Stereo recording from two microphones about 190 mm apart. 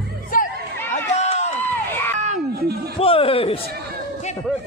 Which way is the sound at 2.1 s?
40° right (ahead or behind).